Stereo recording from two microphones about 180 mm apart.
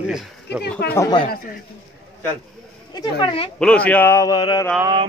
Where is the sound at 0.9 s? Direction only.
15° left (ahead or behind).